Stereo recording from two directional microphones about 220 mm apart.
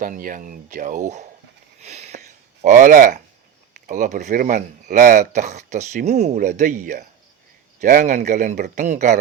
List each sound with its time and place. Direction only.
0.0 s speech: 40° right (ahead or behind)
1.8 s a sound: 30° right (ahead or behind)
3.8 s speech: 35° right (ahead or behind)